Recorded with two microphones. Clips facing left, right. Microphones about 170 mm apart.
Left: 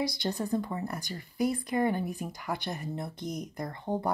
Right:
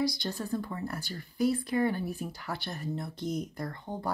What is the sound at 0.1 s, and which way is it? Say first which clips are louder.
Speech: left 3 dB; 20° left (ahead or behind).